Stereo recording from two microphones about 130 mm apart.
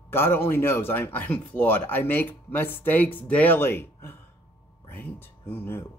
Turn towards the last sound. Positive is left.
turn(degrees=15)  # may be behind; listen again after turning